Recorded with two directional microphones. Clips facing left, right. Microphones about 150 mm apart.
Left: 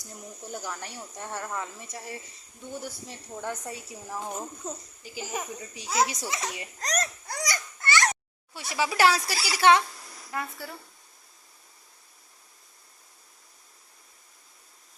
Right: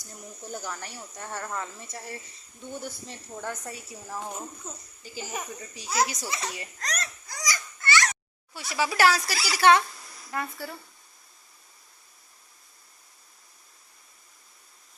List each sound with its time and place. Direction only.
0.5 s speech: 5° left (ahead or behind)
0.8 s speech: 20° left (ahead or behind)
3.5 s speech: 20° left (ahead or behind)
3.9 s speech: 10° left (ahead or behind)
6.8 s speech: 40° left (ahead or behind)
7.3 s baby cry: 60° left (ahead or behind)
8.5 s speech: 20° left (ahead or behind)